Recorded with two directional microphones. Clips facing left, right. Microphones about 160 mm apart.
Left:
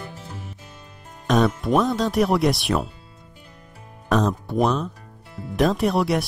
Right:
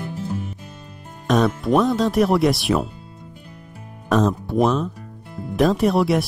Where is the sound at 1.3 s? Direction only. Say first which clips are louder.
Right 1 dB; centre (ahead or behind).